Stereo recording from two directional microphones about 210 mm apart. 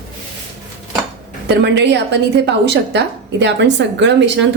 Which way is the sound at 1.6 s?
55° right (ahead or behind).